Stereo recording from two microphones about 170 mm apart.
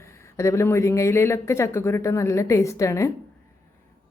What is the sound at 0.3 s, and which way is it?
A woman's voice, 15° left (ahead or behind).